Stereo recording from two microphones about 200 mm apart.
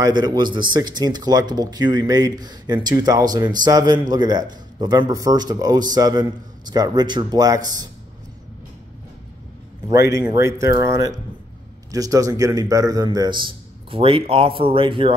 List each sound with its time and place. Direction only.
0.0 s a man's voice: 20° right (ahead or behind)
10.1 s a man's voice: 15° right (ahead or behind)